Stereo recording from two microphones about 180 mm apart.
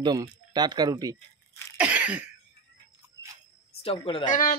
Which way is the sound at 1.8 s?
5° right (ahead or behind).